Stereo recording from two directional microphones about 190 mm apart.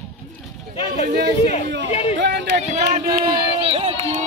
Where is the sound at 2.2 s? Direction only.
65° right (ahead or behind).